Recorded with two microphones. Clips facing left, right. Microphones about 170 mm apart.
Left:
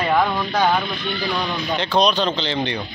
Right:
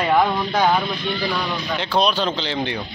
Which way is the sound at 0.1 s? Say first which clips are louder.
Right 2 dB; 10° right (ahead or behind).